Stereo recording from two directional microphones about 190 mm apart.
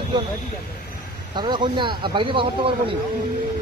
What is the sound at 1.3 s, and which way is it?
Speech, 25° right (ahead or behind).